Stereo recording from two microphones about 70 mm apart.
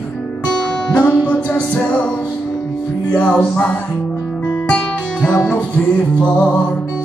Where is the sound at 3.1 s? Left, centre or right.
Centre.